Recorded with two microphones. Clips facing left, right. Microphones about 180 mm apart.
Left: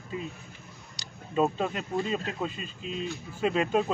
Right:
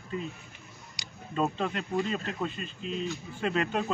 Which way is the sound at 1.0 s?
10° right (ahead or behind).